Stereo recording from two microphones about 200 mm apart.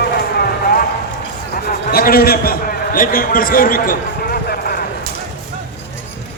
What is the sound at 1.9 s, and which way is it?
A man's voice, 50° left (ahead or behind).